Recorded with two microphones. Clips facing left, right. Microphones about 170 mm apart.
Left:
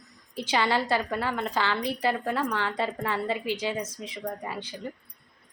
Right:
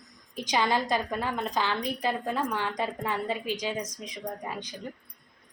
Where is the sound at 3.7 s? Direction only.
5° left (ahead or behind).